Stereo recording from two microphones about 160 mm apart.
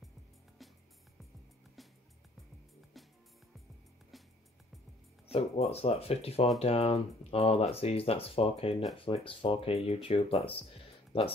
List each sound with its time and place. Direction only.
5.3 s speech: 40° left (ahead or behind)